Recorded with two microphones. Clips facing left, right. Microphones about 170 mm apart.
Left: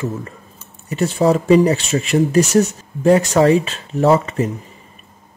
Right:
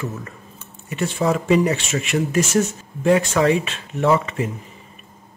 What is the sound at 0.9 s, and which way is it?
Speech, 35° left (ahead or behind).